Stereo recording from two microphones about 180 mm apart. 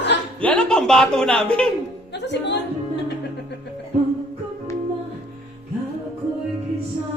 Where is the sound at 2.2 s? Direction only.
75° left (ahead or behind).